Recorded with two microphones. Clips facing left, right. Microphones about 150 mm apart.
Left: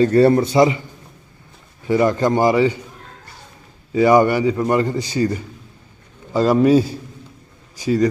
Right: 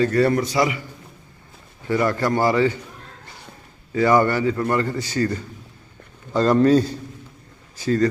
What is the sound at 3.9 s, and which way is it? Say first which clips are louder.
A man's voice: left 4 dB; 15° left (ahead or behind).